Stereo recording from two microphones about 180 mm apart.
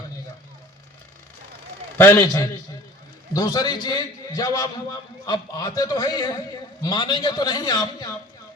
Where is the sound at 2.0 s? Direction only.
15° left (ahead or behind).